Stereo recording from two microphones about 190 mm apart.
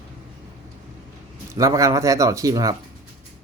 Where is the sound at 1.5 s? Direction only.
15° right (ahead or behind).